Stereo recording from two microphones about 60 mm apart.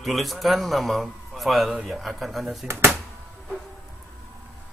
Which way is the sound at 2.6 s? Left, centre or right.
Right.